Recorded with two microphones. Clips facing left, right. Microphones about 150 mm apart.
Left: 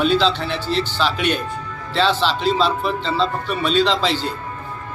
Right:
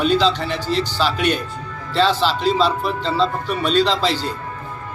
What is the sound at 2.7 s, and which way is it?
Music, 5° right (ahead or behind).